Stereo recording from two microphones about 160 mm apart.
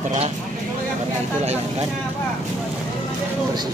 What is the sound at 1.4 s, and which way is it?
Speech, 40° right (ahead or behind).